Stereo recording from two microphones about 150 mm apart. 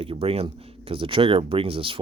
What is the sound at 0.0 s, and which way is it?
Speech, 40° right (ahead or behind).